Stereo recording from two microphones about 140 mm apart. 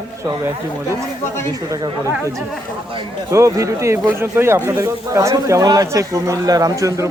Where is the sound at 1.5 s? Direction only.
25° right (ahead or behind).